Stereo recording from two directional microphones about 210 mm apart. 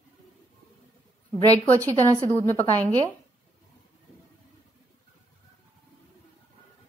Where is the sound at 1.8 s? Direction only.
15° right (ahead or behind).